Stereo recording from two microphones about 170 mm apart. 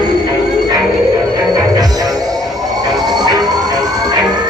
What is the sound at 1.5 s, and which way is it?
Music, 20° right (ahead or behind).